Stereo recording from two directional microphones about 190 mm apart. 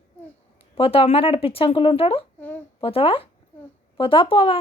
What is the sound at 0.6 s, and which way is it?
Speech, 30° left (ahead or behind).